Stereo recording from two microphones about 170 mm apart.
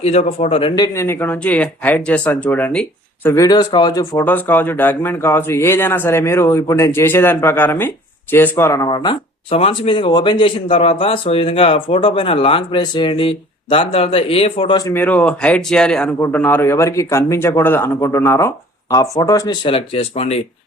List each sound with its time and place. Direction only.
0.0 s speech: 40° left (ahead or behind)
0.8 s speech: 15° left (ahead or behind); by 14.8 s 35° left (ahead or behind)
14.8 s speech: 15° left (ahead or behind); by 20.4 s 35° left (ahead or behind)